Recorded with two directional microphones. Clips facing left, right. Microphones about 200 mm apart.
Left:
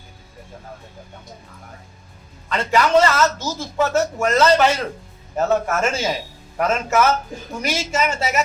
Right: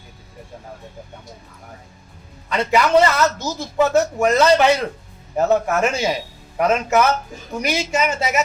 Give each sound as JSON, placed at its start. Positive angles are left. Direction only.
{"t": 2.5, "sound": "a man's voice", "side_deg": -15}